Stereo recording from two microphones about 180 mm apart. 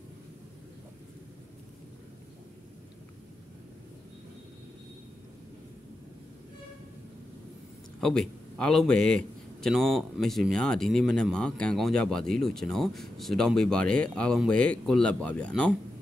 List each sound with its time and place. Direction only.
8.0 s a man's voice: 5° left (ahead or behind)